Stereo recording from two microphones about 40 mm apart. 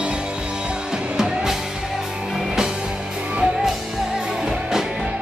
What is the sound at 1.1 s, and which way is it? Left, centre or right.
Music, centre.